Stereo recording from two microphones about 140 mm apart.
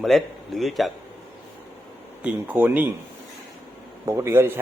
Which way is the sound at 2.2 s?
10° right (ahead or behind).